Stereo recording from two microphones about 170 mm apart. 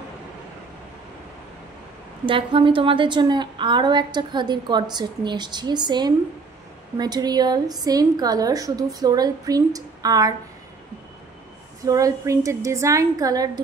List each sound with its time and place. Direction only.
2.2 s a woman's voice: 30° right (ahead or behind)
11.8 s a woman's voice: 20° right (ahead or behind)